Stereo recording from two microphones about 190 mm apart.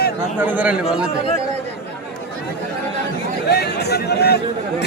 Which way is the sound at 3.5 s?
60° left (ahead or behind).